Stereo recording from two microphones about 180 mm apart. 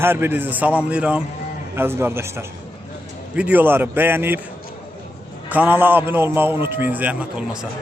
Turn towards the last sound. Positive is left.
turn(degrees=-10)  # may be behind; listen again after turning